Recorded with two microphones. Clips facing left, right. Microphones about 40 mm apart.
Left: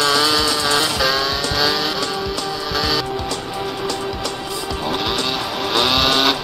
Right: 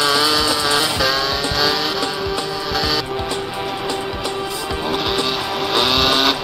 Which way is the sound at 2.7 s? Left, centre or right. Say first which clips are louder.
Even; centre.